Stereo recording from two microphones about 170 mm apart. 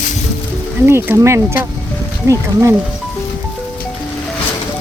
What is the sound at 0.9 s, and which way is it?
Speech, 15° right (ahead or behind).